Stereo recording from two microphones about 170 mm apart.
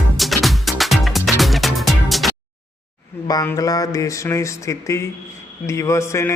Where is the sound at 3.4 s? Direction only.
20° left (ahead or behind).